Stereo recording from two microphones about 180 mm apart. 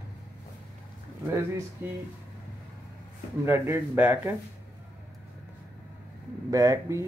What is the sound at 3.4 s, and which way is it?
Speech, 15° right (ahead or behind).